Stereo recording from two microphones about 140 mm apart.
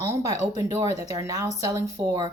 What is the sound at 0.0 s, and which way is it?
Speech, 20° right (ahead or behind).